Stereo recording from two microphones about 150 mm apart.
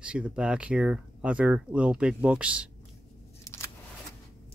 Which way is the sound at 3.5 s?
20° left (ahead or behind).